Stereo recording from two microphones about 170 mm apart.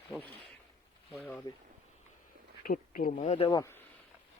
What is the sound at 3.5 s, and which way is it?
Speech, 15° left (ahead or behind).